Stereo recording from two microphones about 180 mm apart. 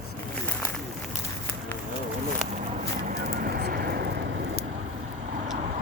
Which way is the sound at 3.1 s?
50° right (ahead or behind).